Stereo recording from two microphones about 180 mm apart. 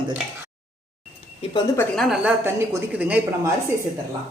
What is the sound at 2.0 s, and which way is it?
A woman's voice, 5° right (ahead or behind).